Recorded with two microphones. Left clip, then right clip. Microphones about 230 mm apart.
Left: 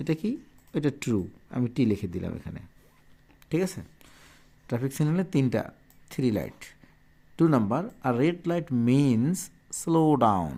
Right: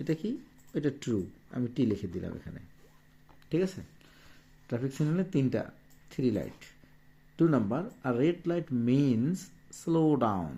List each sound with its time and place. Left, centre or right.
0.0 s speech: left